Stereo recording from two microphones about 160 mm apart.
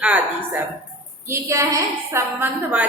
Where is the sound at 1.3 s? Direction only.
20° right (ahead or behind).